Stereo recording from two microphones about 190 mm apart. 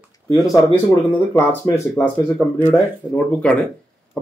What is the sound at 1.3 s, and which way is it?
Speech, 10° left (ahead or behind).